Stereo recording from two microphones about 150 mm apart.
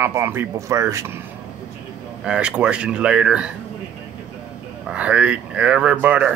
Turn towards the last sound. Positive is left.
turn(degrees=-10)  # may be behind; listen again after turning